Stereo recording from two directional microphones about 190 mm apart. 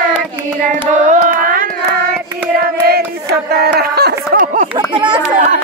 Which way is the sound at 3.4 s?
55° right (ahead or behind).